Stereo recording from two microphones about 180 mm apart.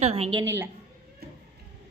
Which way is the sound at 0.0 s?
35° right (ahead or behind).